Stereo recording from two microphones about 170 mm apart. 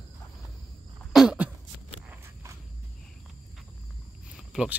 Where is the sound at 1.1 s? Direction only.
5° right (ahead or behind).